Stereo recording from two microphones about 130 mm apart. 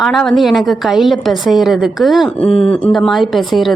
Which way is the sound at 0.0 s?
Centre (ahead or behind).